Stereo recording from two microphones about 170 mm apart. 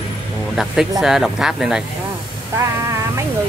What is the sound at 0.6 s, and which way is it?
Speech, centre (ahead or behind).